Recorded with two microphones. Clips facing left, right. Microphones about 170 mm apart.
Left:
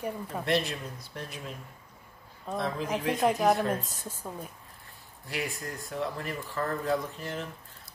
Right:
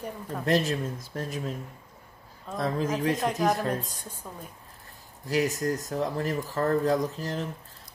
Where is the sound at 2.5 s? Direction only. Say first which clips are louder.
Right 3 dB; 40° right (ahead or behind).